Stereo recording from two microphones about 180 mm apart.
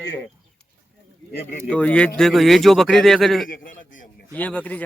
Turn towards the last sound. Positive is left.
turn(degrees=10)  # may be behind; listen again after turning